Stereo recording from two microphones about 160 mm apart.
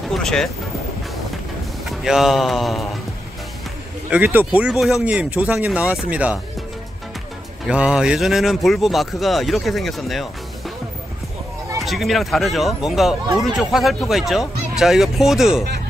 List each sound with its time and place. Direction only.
0.1 s speech: 5° left (ahead or behind)
1.9 s speech: centre (ahead or behind)
4.1 s speech: 10° right (ahead or behind)
7.6 s speech: 5° right (ahead or behind)
11.8 s speech: centre (ahead or behind)